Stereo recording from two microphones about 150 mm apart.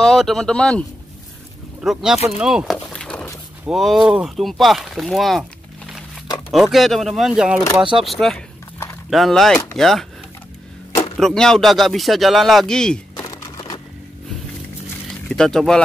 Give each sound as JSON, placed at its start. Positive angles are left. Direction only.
{"t": 0.0, "sound": "speech", "side_deg": 0}
{"t": 2.3, "sound": "a sound", "side_deg": -5}
{"t": 3.6, "sound": "speech", "side_deg": 0}
{"t": 6.5, "sound": "speech", "side_deg": 0}
{"t": 11.1, "sound": "speech", "side_deg": 5}
{"t": 13.2, "sound": "a sound", "side_deg": 25}
{"t": 15.2, "sound": "speech", "side_deg": 5}